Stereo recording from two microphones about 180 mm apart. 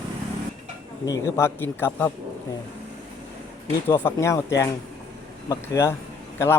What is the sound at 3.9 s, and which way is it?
A man's voice, 15° left (ahead or behind).